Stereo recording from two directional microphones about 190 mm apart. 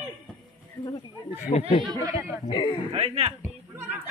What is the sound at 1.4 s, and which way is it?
Speech, 35° left (ahead or behind).